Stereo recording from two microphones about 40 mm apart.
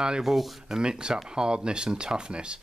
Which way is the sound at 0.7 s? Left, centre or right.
Right.